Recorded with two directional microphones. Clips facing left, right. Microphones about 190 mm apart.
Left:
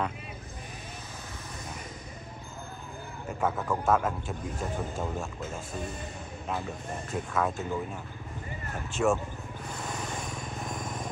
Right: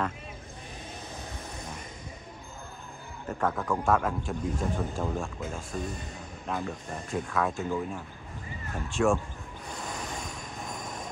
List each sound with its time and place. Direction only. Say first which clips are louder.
3.3 s speech: right 1 dB; 5° left (ahead or behind)